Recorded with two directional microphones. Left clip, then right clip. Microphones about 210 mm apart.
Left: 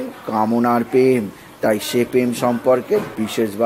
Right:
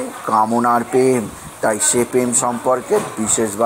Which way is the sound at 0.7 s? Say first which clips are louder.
Right 1 dB; 35° left (ahead or behind).